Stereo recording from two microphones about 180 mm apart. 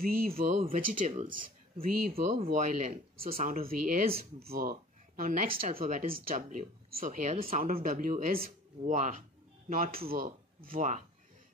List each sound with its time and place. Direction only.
0.0 s speech: 55° right (ahead or behind)
2.3 s speech: 40° right (ahead or behind)
7.6 s speech: 50° right (ahead or behind)